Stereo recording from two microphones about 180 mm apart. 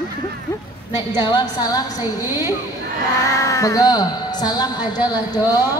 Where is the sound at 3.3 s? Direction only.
20° left (ahead or behind).